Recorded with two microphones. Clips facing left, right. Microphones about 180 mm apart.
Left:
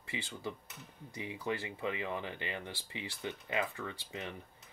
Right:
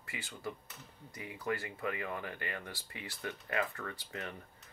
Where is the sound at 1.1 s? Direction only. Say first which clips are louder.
Even; 25° left (ahead or behind).